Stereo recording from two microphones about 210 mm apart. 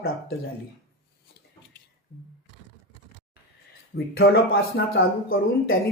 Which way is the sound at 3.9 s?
60° left (ahead or behind).